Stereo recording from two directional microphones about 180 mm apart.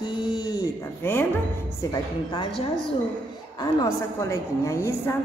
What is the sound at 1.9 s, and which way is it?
Speech, 25° left (ahead or behind).